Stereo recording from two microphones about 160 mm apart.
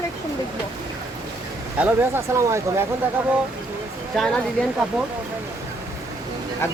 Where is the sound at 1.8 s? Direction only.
15° right (ahead or behind).